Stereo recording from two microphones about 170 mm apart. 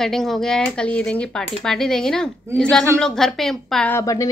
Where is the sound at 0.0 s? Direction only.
Centre (ahead or behind).